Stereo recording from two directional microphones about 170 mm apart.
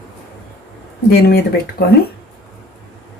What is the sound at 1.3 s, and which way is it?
Speech, 70° left (ahead or behind).